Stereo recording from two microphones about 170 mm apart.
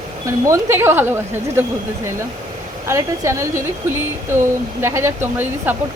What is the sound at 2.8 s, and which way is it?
Speech, 15° right (ahead or behind).